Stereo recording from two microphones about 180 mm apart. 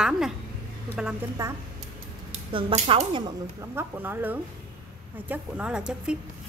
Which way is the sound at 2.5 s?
35° right (ahead or behind).